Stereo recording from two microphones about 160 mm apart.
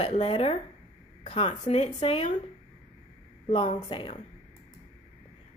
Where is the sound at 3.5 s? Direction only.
35° left (ahead or behind).